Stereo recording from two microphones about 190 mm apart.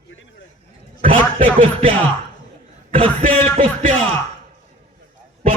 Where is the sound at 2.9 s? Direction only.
30° right (ahead or behind).